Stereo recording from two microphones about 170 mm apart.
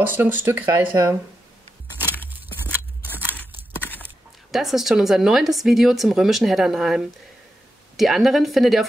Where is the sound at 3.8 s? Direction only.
10° left (ahead or behind).